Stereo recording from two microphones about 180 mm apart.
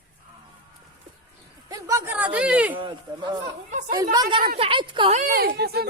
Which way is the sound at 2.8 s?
25° right (ahead or behind).